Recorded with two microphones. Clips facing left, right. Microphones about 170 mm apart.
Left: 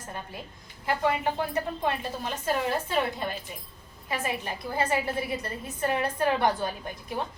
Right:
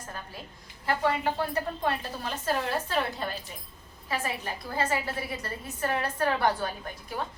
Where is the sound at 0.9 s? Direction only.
15° left (ahead or behind).